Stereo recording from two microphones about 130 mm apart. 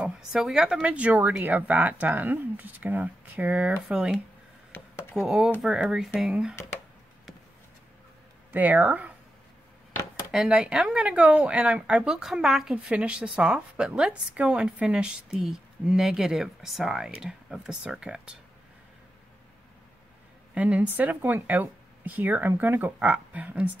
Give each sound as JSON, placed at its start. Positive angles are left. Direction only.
{"t": 0.0, "sound": "speech", "side_deg": -5}
{"t": 4.7, "sound": "a sound", "side_deg": 15}
{"t": 5.1, "sound": "speech", "side_deg": -5}
{"t": 8.5, "sound": "speech", "side_deg": -15}
{"t": 10.3, "sound": "speech", "side_deg": -5}
{"t": 20.5, "sound": "speech", "side_deg": -10}